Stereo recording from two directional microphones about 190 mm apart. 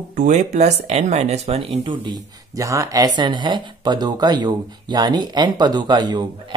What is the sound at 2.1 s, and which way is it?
Speech, 15° right (ahead or behind).